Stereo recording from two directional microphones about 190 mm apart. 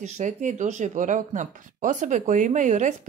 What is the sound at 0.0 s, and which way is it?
Speech, 40° right (ahead or behind).